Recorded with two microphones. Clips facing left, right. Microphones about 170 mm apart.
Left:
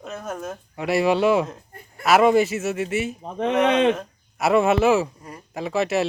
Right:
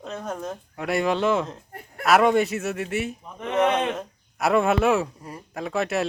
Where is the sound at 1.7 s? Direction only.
65° right (ahead or behind).